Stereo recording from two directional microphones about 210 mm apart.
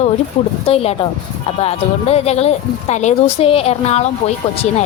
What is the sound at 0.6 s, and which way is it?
A woman's voice, 25° left (ahead or behind).